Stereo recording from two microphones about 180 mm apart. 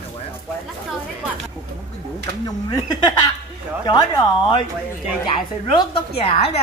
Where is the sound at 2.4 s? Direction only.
20° left (ahead or behind).